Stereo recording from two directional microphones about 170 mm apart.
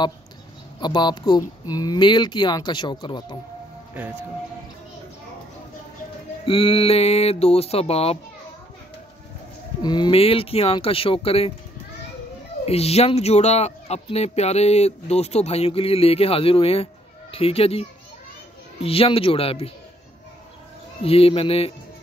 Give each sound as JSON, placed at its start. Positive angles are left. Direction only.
{"t": 0.7, "sound": "speech", "side_deg": 25}
{"t": 3.9, "sound": "speech", "side_deg": -10}
{"t": 6.4, "sound": "speech", "side_deg": 30}
{"t": 9.8, "sound": "speech", "side_deg": 25}
{"t": 12.6, "sound": "speech", "side_deg": 35}
{"t": 21.0, "sound": "speech", "side_deg": 35}